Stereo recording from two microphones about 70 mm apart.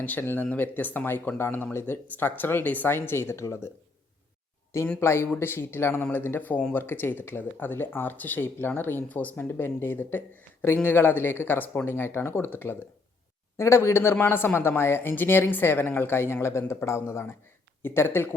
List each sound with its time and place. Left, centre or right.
0.0 s speech: left
4.9 s speech: left